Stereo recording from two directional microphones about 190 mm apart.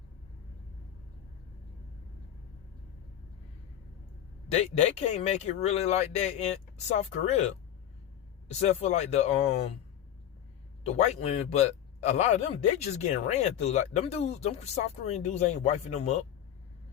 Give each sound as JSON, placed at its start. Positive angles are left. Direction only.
{"t": 4.5, "sound": "speech", "side_deg": 35}
{"t": 10.8, "sound": "speech", "side_deg": 35}